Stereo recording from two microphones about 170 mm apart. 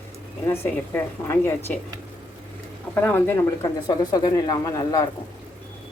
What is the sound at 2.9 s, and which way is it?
Speech, 10° left (ahead or behind).